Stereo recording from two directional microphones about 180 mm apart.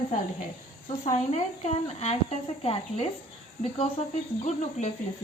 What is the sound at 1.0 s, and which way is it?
Speech, 40° left (ahead or behind).